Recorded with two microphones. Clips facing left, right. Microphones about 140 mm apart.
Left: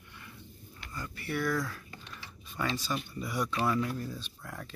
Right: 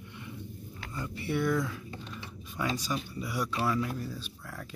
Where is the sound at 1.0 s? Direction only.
25° right (ahead or behind).